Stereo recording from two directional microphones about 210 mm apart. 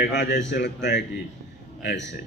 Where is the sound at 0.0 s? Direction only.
55° left (ahead or behind).